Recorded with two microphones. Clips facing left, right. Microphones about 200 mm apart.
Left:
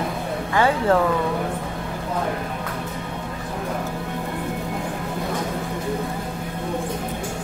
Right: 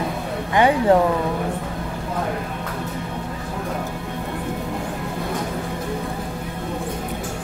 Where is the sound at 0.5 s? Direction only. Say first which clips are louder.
Right 3 dB; 15° right (ahead or behind).